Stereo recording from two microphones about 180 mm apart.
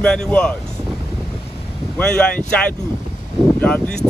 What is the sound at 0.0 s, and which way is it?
Speech, 5° left (ahead or behind).